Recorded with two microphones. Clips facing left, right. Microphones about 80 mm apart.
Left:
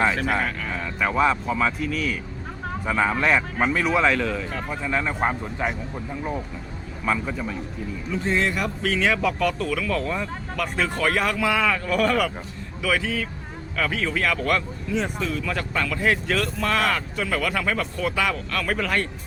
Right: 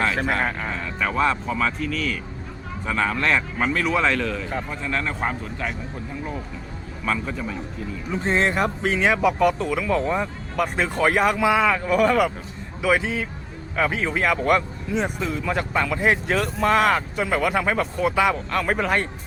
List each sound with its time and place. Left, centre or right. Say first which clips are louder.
0.9 s a man's voice: left 1 dB; centre
7.0 s speech: left 1 dB; centre
8.1 s speech: right 2 dB; right